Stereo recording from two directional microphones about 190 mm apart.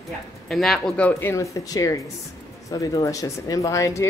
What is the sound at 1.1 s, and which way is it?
Speech, 15° left (ahead or behind).